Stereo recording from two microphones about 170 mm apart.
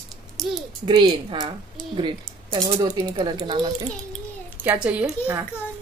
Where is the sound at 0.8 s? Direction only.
25° right (ahead or behind).